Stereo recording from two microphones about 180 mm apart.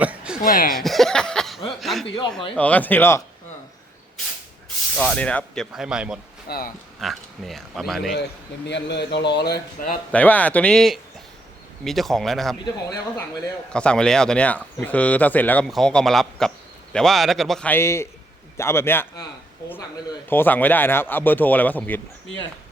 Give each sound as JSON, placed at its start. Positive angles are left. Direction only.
{"t": 0.0, "sound": "speech", "side_deg": -10}
{"t": 0.4, "sound": "speech", "side_deg": 50}
{"t": 0.7, "sound": "speech", "side_deg": 0}
{"t": 1.8, "sound": "a sound", "side_deg": 0}
{"t": 2.6, "sound": "a man's voice", "side_deg": 10}
{"t": 4.9, "sound": "a man's voice", "side_deg": 5}
{"t": 5.7, "sound": "speech", "side_deg": -5}
{"t": 6.5, "sound": "speech", "side_deg": 55}
{"t": 7.0, "sound": "speech", "side_deg": 0}
{"t": 8.6, "sound": "speech", "side_deg": 75}
{"t": 10.1, "sound": "a man's voice", "side_deg": 10}
{"t": 12.6, "sound": "speech", "side_deg": 20}
{"t": 13.7, "sound": "a man's voice", "side_deg": 5}
{"t": 20.3, "sound": "a man's voice", "side_deg": 10}